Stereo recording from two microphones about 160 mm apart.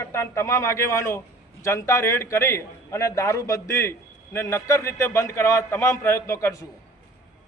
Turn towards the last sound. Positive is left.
turn(degrees=20)  # may be behind; listen again after turning